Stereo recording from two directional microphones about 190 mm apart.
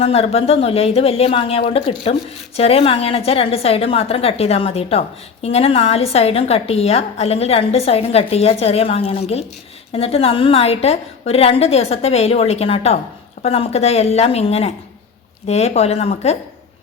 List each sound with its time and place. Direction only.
0.0 s a woman's voice: 35° left (ahead or behind)